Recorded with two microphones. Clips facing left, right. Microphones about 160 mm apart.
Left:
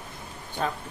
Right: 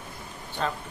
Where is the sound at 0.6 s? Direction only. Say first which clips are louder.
Even; 10° left (ahead or behind).